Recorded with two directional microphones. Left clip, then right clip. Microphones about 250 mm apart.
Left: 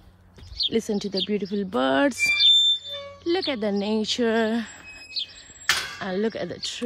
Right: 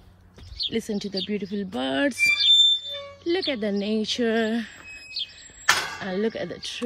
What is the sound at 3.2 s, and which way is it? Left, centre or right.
Speech, centre.